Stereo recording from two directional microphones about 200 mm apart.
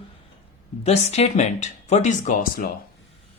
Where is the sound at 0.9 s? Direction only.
35° left (ahead or behind).